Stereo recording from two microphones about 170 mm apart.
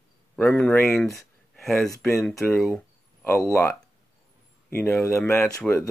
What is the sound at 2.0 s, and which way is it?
Speech, 15° left (ahead or behind).